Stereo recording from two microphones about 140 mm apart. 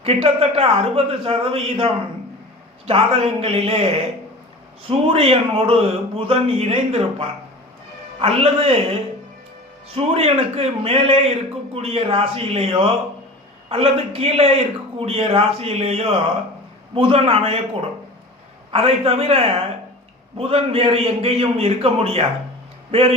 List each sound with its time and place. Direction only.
0.0 s a man's voice: 45° right (ahead or behind)
18.7 s a man's voice: 45° right (ahead or behind)